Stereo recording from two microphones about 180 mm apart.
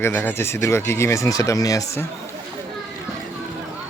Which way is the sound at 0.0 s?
10° left (ahead or behind).